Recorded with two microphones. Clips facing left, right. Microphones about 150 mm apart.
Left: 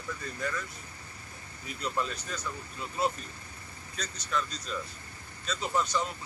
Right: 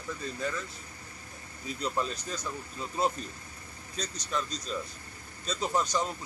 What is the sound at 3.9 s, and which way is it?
Speech, 35° right (ahead or behind).